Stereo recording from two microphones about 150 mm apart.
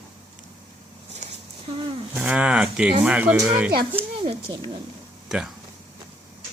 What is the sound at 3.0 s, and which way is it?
Speech, 10° right (ahead or behind).